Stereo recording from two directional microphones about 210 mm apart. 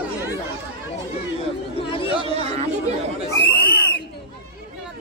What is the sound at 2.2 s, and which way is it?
Speech, 30° right (ahead or behind).